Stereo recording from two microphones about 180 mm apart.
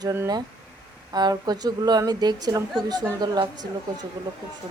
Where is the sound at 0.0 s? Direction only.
20° right (ahead or behind).